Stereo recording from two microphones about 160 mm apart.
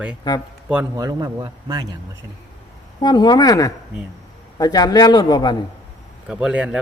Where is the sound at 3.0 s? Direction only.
25° left (ahead or behind).